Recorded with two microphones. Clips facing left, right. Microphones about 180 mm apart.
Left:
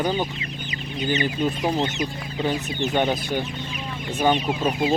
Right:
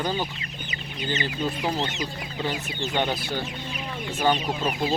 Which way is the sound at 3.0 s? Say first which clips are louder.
Left 3 dB; 15° left (ahead or behind).